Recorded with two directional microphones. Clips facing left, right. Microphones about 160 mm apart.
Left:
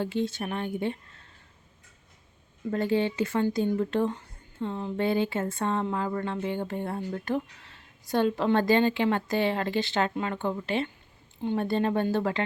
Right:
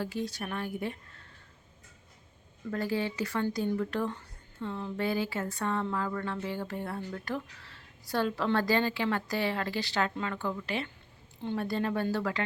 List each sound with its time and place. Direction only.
0.0 s speech: 25° left (ahead or behind)
2.6 s speech: 25° left (ahead or behind)